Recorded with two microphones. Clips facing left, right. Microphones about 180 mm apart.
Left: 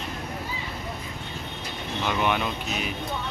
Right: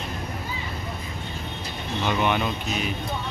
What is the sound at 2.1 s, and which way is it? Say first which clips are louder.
Speech: right 2 dB; centre (ahead or behind).